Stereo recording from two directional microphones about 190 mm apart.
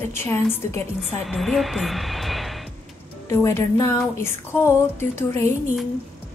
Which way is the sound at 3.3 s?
15° left (ahead or behind).